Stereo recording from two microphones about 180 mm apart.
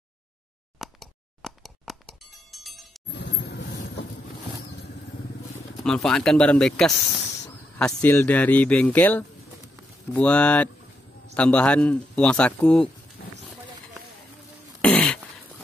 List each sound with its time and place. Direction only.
0.7 s a sound: centre (ahead or behind)
3.1 s vehicle: 70° left (ahead or behind)
5.9 s speech: 5° left (ahead or behind)
14.8 s throat clearing: 5° left (ahead or behind)